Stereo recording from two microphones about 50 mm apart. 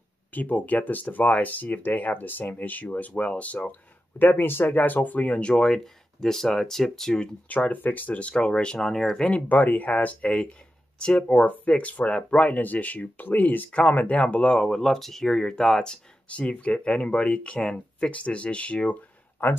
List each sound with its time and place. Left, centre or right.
0.3 s speech: left
4.2 s speech: left
6.2 s speech: centre
7.4 s speech: left
8.7 s speech: centre
9.5 s speech: left
10.2 s speech: centre
11.4 s speech: left
13.7 s speech: left
14.6 s speech: centre
16.3 s speech: left
18.1 s speech: left